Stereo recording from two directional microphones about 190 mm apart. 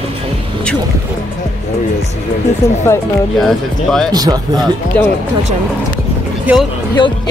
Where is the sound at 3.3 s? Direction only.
Centre (ahead or behind).